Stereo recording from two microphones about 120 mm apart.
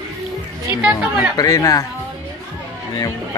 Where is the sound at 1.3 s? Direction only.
30° left (ahead or behind).